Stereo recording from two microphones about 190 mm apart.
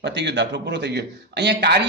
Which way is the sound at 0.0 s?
65° right (ahead or behind).